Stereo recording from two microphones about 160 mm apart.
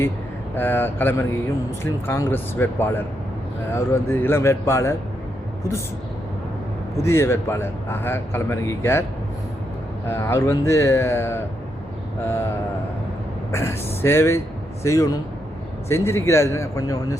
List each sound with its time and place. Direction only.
0.5 s a man's voice: 15° left (ahead or behind)
6.9 s a man's voice: 15° left (ahead or behind)
10.1 s a man's voice: 15° left (ahead or behind)
13.5 s a man's voice: 15° left (ahead or behind)